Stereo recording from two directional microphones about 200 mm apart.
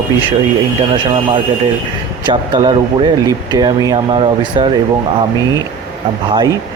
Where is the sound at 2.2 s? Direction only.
25° right (ahead or behind).